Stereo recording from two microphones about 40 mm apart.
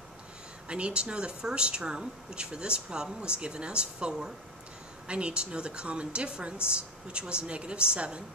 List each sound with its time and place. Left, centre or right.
0.7 s speech: right